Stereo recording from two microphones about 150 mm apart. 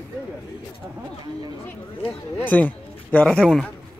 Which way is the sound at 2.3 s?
10° left (ahead or behind).